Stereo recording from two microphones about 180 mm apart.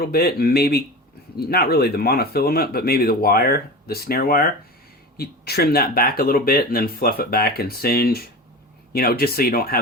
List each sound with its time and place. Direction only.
0.0 s speech: 60° left (ahead or behind)